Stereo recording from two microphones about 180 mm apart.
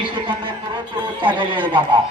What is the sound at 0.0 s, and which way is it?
A man's voice, 30° right (ahead or behind).